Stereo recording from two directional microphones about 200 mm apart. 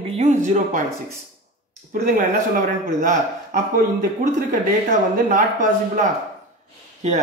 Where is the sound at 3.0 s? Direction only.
40° right (ahead or behind).